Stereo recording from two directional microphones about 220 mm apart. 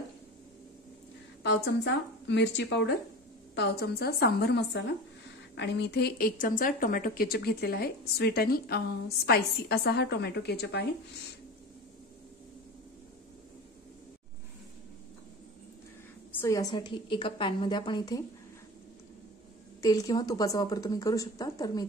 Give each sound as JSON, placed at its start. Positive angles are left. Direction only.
{"t": 1.4, "sound": "a woman's voice", "side_deg": 50}
{"t": 16.3, "sound": "a woman's voice", "side_deg": 10}
{"t": 19.8, "sound": "a woman's voice", "side_deg": 15}